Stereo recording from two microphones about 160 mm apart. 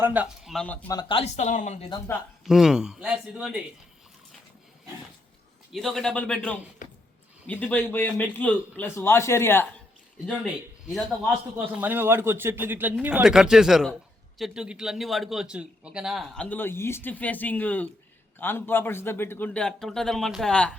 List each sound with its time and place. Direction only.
0.0 s speech: 10° right (ahead or behind)
0.5 s a man's voice: 10° left (ahead or behind)
0.9 s speech: 30° left (ahead or behind)
1.4 s speech: 50° left (ahead or behind)
2.5 s speech: 5° right (ahead or behind)
5.7 s speech: centre (ahead or behind)
6.8 s a sound: 55° left (ahead or behind)
7.4 s a man's voice: 10° left (ahead or behind)
10.2 s speech: centre (ahead or behind)
11.5 s a man's voice: 10° right (ahead or behind); by 20.7 s 5° left (ahead or behind)